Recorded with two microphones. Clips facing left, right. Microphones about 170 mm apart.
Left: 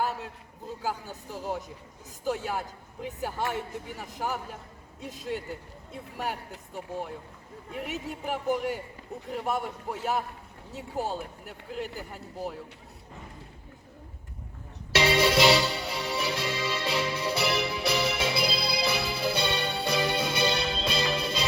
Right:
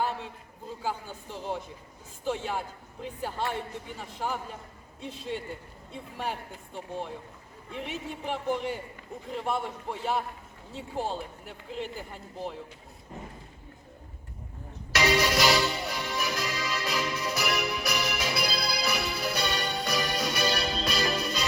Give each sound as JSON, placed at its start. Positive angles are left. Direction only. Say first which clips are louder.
{"t": 0.8, "sound": "a man's voice", "louder": "even", "side_deg": 5}
{"t": 6.7, "sound": "a man's voice", "louder": "left 1 dB", "side_deg": 10}
{"t": 14.9, "sound": "music", "louder": "left 2 dB", "side_deg": 30}